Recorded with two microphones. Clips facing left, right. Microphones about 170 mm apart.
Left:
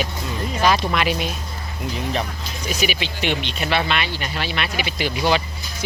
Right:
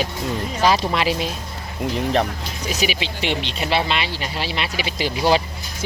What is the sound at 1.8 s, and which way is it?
Speech, 55° right (ahead or behind).